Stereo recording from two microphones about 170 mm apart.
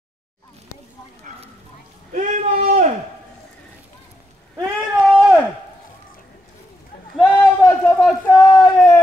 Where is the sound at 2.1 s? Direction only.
45° right (ahead or behind).